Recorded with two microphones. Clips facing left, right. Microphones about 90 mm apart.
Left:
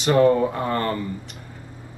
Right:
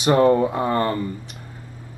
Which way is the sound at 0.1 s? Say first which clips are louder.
Right 1 dB; 30° right (ahead or behind).